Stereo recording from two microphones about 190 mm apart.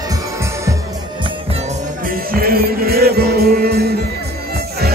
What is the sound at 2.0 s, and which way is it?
Music, 50° right (ahead or behind).